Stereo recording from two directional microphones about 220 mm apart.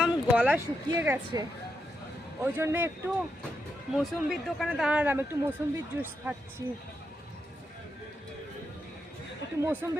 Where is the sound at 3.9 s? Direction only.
Centre (ahead or behind).